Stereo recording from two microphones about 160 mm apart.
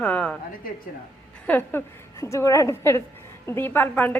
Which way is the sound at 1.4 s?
10° left (ahead or behind).